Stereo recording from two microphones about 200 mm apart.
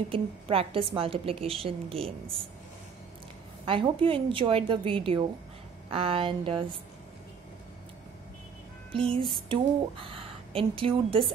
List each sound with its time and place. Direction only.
0.1 s speech: 30° right (ahead or behind)
3.6 s speech: 25° right (ahead or behind)
9.1 s speech: 25° right (ahead or behind)